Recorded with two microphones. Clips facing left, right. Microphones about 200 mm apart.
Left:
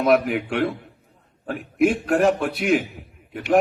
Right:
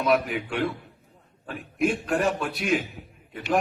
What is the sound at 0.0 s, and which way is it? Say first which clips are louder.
A man's voice: left 5 dB; 60° left (ahead or behind).